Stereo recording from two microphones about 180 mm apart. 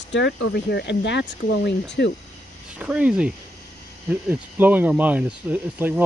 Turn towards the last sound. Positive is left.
turn(degrees=-10)  # may be behind; listen again after turning